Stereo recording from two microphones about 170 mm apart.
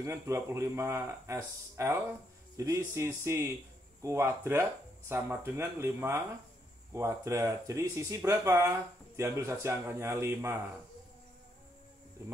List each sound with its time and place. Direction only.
0.0 s speech: 15° right (ahead or behind)